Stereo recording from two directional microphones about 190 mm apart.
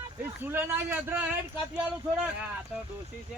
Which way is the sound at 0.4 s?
10° right (ahead or behind).